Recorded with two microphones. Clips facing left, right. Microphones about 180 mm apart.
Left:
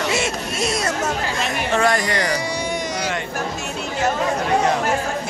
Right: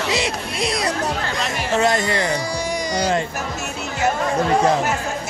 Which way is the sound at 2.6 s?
5° left (ahead or behind).